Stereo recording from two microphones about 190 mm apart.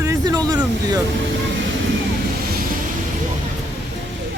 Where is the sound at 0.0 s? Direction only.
15° right (ahead or behind).